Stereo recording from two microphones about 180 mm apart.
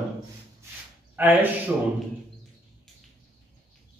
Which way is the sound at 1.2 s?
10° right (ahead or behind).